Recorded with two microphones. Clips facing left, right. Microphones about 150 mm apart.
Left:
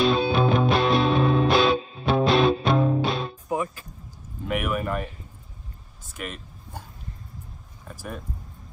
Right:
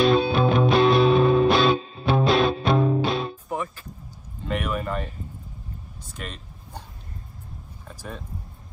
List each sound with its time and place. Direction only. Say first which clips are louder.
0.0 s music: right 2 dB; centre (ahead or behind)
3.4 s music: left 3 dB; 15° left (ahead or behind)
4.5 s a sound: left 1 dB; 10° left (ahead or behind)
6.1 s speech: left 2 dB; 10° left (ahead or behind)